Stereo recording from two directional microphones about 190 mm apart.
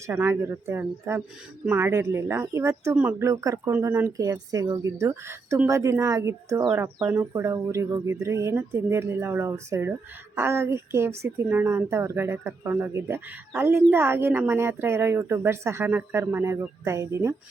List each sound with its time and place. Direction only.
0.1 s speech: 10° right (ahead or behind)